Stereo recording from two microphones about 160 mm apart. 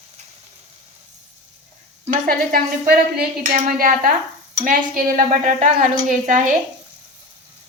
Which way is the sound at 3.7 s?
60° right (ahead or behind).